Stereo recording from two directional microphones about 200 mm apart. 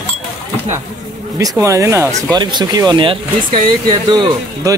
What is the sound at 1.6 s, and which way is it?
Speech, 15° right (ahead or behind).